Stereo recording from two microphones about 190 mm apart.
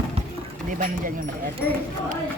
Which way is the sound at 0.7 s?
45° right (ahead or behind).